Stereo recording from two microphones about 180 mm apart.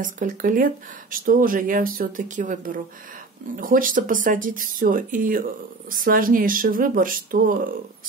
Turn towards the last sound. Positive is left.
turn(degrees=-50)  # may be behind; listen again after turning